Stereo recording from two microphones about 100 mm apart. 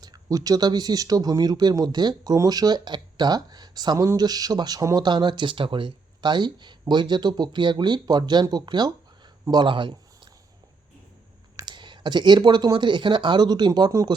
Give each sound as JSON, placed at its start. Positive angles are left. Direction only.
{"t": 0.0, "sound": "speech", "side_deg": -40}
{"t": 3.9, "sound": "speech", "side_deg": -30}
{"t": 5.0, "sound": "speech", "side_deg": -50}
{"t": 11.6, "sound": "speech", "side_deg": -50}